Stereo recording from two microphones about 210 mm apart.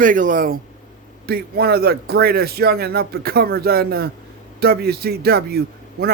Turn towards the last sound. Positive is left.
turn(degrees=-50)  # may be behind; listen again after turning